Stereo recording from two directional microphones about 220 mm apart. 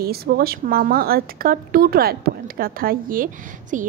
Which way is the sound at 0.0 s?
45° right (ahead or behind).